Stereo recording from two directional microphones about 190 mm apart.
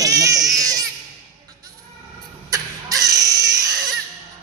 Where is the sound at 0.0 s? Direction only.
15° right (ahead or behind).